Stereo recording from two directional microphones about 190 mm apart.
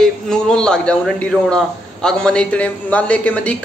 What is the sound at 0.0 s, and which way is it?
A man's voice, 5° left (ahead or behind).